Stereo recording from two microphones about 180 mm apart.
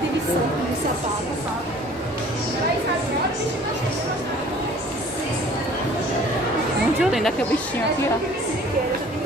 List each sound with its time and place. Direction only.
7.0 s speech: centre (ahead or behind)